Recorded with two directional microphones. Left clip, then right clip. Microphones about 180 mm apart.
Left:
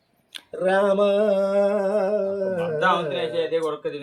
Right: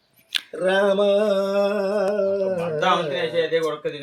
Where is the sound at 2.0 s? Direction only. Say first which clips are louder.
Right 1 dB; 15° right (ahead or behind).